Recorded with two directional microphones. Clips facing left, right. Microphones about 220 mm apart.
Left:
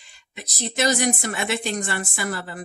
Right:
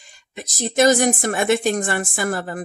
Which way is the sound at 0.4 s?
45° right (ahead or behind).